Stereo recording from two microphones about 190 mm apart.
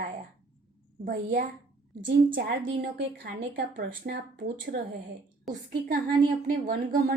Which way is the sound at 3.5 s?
50° right (ahead or behind).